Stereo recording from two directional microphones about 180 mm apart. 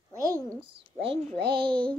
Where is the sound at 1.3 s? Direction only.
65° right (ahead or behind).